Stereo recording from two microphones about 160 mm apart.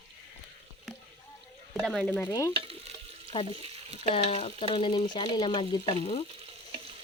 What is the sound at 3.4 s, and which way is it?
Speech, 35° right (ahead or behind).